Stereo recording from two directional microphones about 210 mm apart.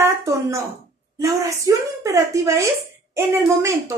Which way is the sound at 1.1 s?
15° right (ahead or behind).